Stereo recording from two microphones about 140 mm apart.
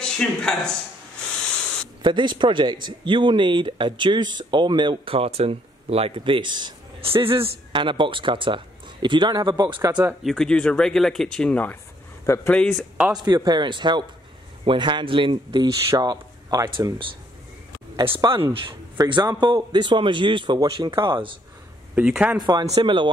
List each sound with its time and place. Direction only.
0.0 s speech: 5° left (ahead or behind)
2.0 s speech: 35° right (ahead or behind)
9.8 s speech: 15° right (ahead or behind)
10.2 s speech: 5° left (ahead or behind)
12.3 s a man's voice: 20° left (ahead or behind)
12.7 s speech: 5° right (ahead or behind)
13.2 s speech: 30° right (ahead or behind)
21.9 s speech: 5° right (ahead or behind)
22.4 s speech: 30° right (ahead or behind)